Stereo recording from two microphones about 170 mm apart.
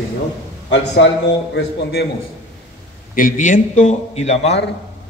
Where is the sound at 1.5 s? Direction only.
70° left (ahead or behind).